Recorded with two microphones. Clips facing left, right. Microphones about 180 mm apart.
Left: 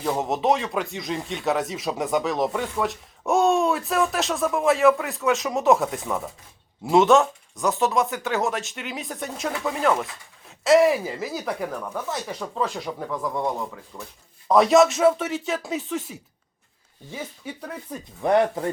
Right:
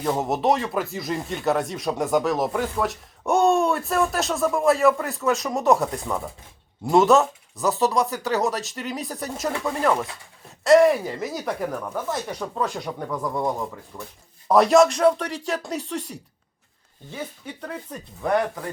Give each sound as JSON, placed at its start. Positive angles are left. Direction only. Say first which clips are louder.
{"t": 0.0, "sound": "speech", "louder": "right 1 dB", "side_deg": 0}
{"t": 18.2, "sound": "speech", "louder": "left 3 dB", "side_deg": 25}